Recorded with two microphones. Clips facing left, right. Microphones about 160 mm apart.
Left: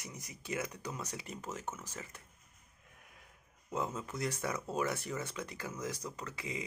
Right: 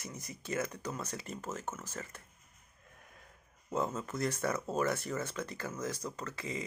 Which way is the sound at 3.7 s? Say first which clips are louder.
Right 3 dB; 40° right (ahead or behind).